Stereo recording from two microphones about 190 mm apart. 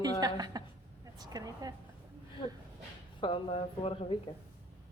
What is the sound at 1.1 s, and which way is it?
Speech, 20° right (ahead or behind).